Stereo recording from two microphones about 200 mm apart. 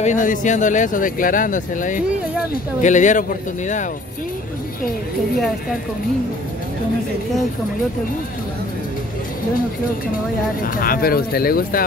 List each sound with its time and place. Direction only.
0.0 s speech: 40° left (ahead or behind)
10.6 s speech: 45° left (ahead or behind)